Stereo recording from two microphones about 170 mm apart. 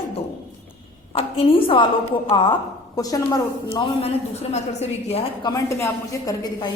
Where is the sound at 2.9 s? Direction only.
20° left (ahead or behind).